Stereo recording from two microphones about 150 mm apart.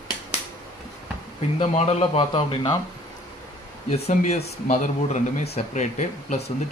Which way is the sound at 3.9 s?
45° left (ahead or behind).